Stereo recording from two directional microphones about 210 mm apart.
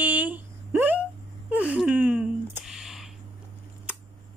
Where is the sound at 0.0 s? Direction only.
10° right (ahead or behind).